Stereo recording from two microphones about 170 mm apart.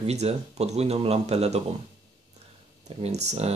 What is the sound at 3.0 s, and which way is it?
Speech, 40° right (ahead or behind).